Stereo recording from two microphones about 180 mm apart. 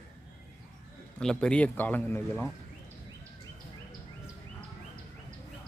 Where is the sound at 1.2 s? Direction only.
5° left (ahead or behind).